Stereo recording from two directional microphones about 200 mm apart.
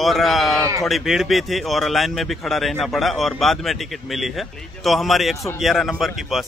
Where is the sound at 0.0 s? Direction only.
Centre (ahead or behind).